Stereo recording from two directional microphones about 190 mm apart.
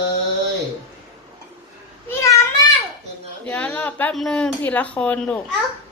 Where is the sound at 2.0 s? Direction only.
15° left (ahead or behind).